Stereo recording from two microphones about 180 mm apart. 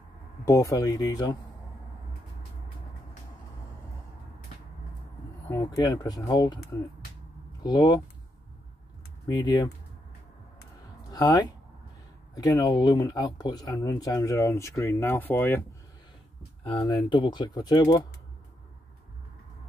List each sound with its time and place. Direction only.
0.5 s speech: 20° left (ahead or behind)
5.5 s speech: 20° left (ahead or behind)
7.6 s speech: 25° left (ahead or behind)
9.3 s speech: 20° left (ahead or behind)
11.1 s speech: 20° left (ahead or behind)
16.6 s speech: 25° left (ahead or behind)